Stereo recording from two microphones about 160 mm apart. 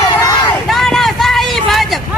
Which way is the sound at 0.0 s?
25° left (ahead or behind).